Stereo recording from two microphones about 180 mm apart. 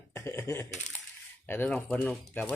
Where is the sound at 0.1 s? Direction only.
15° left (ahead or behind).